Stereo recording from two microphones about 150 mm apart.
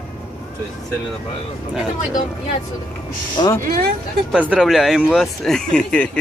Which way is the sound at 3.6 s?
80° right.